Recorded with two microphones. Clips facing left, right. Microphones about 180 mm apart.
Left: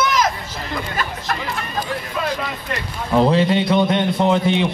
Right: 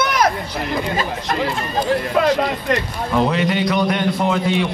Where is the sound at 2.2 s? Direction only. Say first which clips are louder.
Right 8 dB; 65° right (ahead or behind).